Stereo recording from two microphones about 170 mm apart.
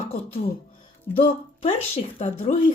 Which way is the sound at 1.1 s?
30° left (ahead or behind).